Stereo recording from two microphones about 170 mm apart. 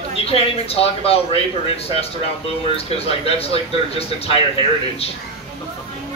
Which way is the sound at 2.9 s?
35° left (ahead or behind).